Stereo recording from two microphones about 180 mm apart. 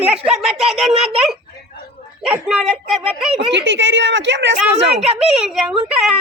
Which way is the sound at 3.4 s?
80° right.